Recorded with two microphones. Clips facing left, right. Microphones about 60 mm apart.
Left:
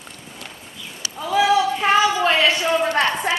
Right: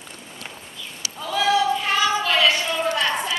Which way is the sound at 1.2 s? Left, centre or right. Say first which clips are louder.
Left 3 dB; centre.